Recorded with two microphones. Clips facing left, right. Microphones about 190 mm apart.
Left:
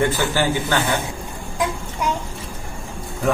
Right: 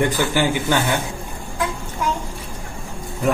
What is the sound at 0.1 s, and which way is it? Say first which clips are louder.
Speech: right 1 dB; 15° right (ahead or behind).